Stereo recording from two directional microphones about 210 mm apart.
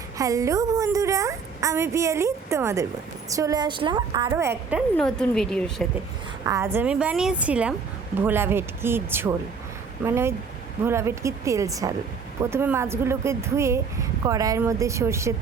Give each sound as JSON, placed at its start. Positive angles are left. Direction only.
{"t": 0.2, "sound": "a woman's voice", "side_deg": -15}
{"t": 4.9, "sound": "a woman's voice", "side_deg": 5}
{"t": 6.4, "sound": "a woman's voice", "side_deg": -15}